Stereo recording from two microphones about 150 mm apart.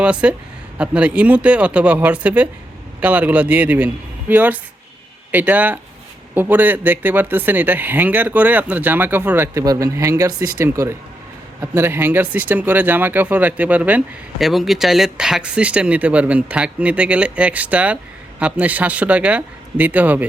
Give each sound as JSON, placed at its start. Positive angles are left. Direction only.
{"t": 0.0, "sound": "speech", "side_deg": -5}